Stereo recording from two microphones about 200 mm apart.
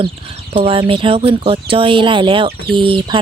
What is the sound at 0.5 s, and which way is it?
Speech, 25° right (ahead or behind).